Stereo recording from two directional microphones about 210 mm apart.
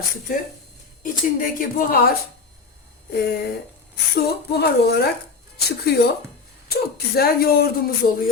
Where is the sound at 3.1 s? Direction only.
50° left (ahead or behind).